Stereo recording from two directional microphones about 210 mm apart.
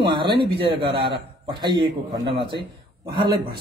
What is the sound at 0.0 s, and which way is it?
A man's voice, 20° right (ahead or behind).